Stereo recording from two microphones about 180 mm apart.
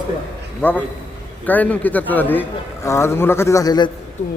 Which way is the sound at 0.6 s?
10° left (ahead or behind).